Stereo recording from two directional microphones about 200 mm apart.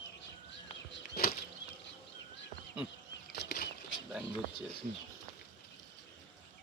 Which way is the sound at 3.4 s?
50° left (ahead or behind).